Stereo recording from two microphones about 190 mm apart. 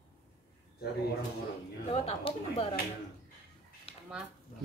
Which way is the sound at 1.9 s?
30° left (ahead or behind).